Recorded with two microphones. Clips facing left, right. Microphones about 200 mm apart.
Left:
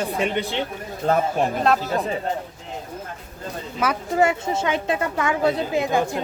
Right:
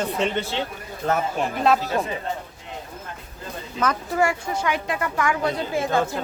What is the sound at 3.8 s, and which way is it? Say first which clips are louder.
Speech: even; 10° left (ahead or behind).